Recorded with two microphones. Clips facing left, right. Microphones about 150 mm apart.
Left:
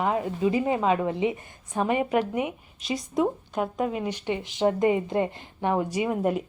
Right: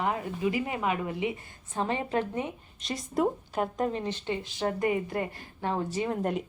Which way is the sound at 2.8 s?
Centre (ahead or behind).